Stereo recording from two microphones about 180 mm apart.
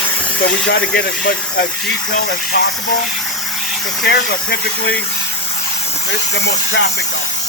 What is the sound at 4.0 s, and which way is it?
Speech, 60° left (ahead or behind).